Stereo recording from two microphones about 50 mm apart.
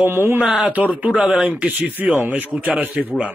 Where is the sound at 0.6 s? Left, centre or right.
Right.